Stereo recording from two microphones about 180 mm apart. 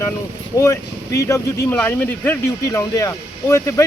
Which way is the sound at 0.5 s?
20° left (ahead or behind).